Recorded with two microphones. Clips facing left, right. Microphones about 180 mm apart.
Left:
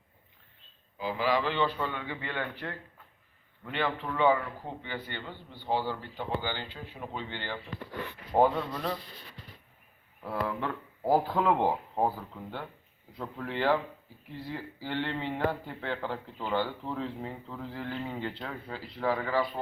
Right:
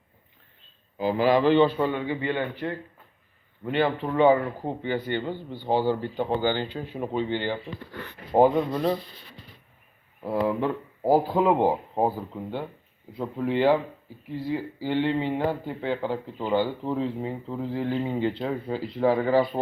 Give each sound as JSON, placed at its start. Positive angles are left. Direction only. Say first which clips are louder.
{"t": 0.9, "sound": "a man's voice", "louder": "right 8 dB", "side_deg": -50}
{"t": 1.5, "sound": "speech", "louder": "right 10 dB", "side_deg": -25}
{"t": 3.6, "sound": "a man's voice", "louder": "right 8 dB", "side_deg": -35}
{"t": 5.2, "sound": "speech", "louder": "right 10 dB", "side_deg": -25}
{"t": 6.1, "sound": "speech", "louder": "right 9 dB", "side_deg": -55}
{"t": 6.6, "sound": "speech", "louder": "right 10 dB", "side_deg": -30}
{"t": 10.2, "sound": "speech", "louder": "right 8 dB", "side_deg": -20}